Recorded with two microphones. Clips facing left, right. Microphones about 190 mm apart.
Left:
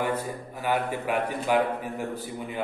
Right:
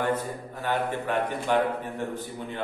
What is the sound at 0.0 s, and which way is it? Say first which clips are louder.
A man's voice: right 1 dB; 10° left (ahead or behind).